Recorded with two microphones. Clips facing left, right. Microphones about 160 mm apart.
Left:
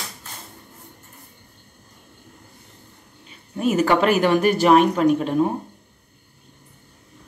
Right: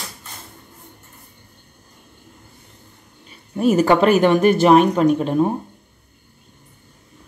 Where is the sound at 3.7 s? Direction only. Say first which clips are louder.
Right 3 dB; 30° right (ahead or behind).